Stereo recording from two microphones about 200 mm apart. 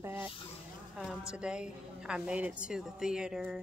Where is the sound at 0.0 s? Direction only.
10° right (ahead or behind).